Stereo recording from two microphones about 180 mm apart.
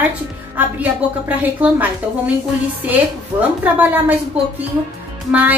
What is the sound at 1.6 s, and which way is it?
A woman's voice, 10° right (ahead or behind).